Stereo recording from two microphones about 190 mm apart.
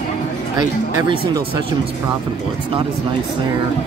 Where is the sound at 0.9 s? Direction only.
25° right (ahead or behind).